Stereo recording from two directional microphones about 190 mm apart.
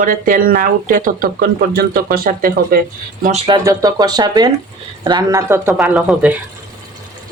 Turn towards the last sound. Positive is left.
turn(degrees=-5)  # may be behind; listen again after turning